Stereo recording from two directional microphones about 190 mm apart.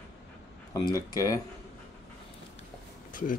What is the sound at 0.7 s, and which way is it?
Speech, 20° left (ahead or behind).